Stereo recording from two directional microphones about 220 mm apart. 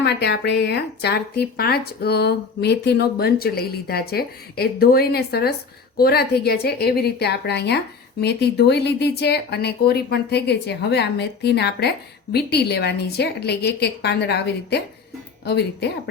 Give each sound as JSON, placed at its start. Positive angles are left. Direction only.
{"t": 0.0, "sound": "speech", "side_deg": 50}